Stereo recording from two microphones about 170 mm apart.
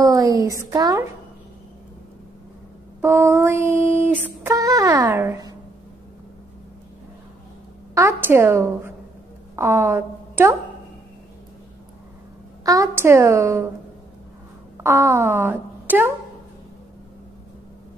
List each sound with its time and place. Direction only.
0.0 s a woman's voice: 20° right (ahead or behind)
3.0 s child singing: 15° right (ahead or behind)
4.4 s a child's voice: 15° right (ahead or behind)
7.9 s child singing: 15° right (ahead or behind)
9.6 s a woman's voice: 15° right (ahead or behind)
12.6 s child singing: 15° right (ahead or behind)
14.8 s a woman's voice: 15° right (ahead or behind)